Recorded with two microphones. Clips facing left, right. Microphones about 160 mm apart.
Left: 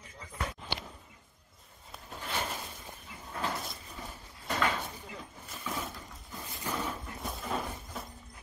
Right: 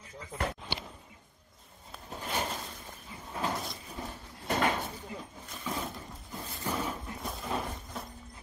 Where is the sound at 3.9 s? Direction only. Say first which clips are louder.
Right 4 dB; 25° right (ahead or behind).